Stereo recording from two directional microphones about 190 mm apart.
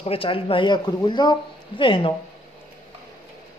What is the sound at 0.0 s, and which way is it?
Speech, 30° left (ahead or behind).